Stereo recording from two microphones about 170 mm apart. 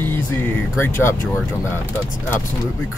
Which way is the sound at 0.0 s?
10° left (ahead or behind).